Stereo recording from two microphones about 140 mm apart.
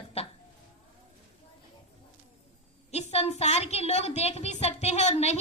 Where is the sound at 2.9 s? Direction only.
50° left (ahead or behind).